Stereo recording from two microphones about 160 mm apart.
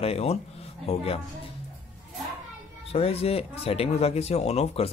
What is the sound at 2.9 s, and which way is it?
Speech, 40° left (ahead or behind).